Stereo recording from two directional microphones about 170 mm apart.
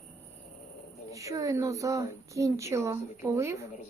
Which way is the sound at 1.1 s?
20° right (ahead or behind).